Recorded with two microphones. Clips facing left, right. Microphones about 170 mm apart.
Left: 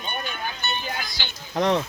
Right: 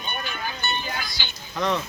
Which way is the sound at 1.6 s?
90° left.